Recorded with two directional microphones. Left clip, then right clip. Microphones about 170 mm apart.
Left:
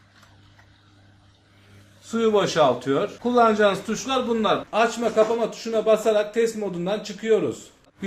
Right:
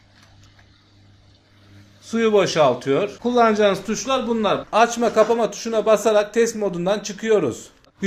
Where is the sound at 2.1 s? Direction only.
35° right (ahead or behind).